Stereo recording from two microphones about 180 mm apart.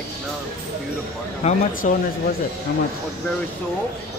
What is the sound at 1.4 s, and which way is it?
Speech, 40° left (ahead or behind).